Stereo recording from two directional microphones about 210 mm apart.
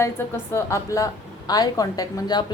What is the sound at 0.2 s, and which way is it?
A woman's voice, 10° left (ahead or behind).